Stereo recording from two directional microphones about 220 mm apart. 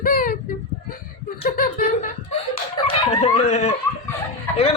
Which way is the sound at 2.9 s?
25° left (ahead or behind).